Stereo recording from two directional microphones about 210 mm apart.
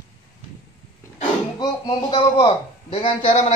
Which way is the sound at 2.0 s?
20° left (ahead or behind).